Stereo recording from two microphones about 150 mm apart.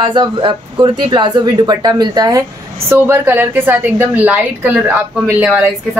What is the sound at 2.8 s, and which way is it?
A woman's voice, 15° right (ahead or behind).